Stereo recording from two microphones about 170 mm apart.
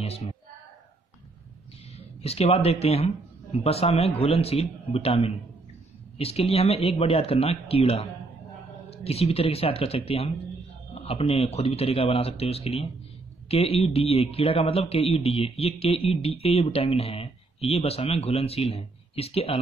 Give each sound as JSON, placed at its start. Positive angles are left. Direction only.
{"t": 2.2, "sound": "a man's voice", "side_deg": 35}